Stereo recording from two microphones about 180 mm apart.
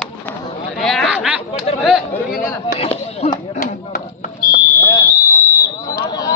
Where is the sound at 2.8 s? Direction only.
35° left (ahead or behind).